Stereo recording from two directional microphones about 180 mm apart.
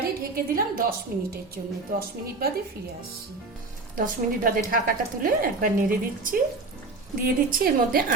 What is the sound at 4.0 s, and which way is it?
Speech, 50° right (ahead or behind).